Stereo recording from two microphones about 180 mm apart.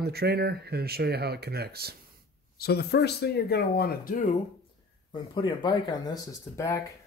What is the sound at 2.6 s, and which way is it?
Speech, 65° left (ahead or behind).